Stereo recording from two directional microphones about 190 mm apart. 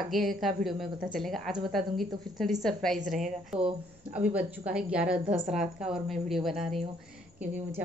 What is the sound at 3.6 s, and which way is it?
Speech, 30° right (ahead or behind).